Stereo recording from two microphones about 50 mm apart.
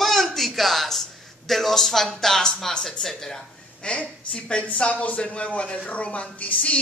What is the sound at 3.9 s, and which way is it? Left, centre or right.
A woman's voice, left.